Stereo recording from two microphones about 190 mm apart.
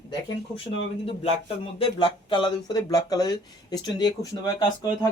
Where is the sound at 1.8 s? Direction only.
25° left (ahead or behind).